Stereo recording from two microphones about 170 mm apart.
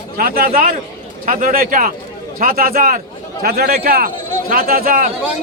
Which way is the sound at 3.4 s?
65° right (ahead or behind).